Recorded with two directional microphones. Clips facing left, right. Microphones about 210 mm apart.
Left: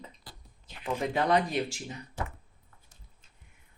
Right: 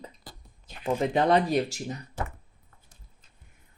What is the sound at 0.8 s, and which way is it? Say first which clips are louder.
Speech: right 5 dB; 30° right (ahead or behind).